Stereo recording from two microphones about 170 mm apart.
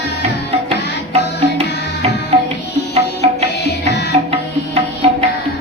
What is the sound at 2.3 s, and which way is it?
Music, 35° right (ahead or behind).